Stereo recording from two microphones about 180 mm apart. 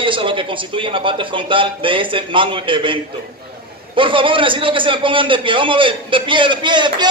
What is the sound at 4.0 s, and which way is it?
A man's voice, 30° right (ahead or behind).